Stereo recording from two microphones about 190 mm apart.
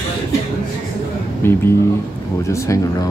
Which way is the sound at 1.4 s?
10° left (ahead or behind).